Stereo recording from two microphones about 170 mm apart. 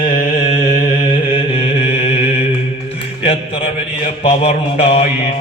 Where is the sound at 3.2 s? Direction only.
35° left (ahead or behind).